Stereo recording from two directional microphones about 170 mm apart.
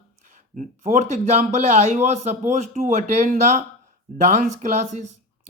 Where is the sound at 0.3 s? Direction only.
50° right (ahead or behind).